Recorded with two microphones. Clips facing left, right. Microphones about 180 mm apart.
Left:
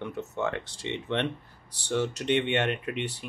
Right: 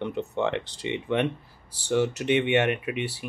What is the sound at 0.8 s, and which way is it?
Speech, 10° right (ahead or behind).